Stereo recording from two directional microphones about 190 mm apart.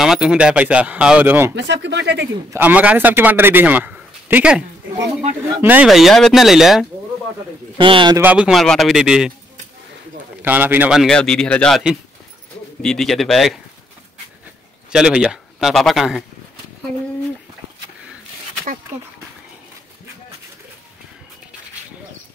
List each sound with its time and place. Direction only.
0.0 s a man's voice: centre (ahead or behind)
1.5 s speech: 70° right (ahead or behind)
2.5 s a man's voice: 10° right (ahead or behind)
7.7 s speech: 25° right (ahead or behind)
8.2 s a man's voice: 5° right (ahead or behind)
10.4 s a man's voice: 10° right (ahead or behind)
14.9 s a man's voice: 5° right (ahead or behind)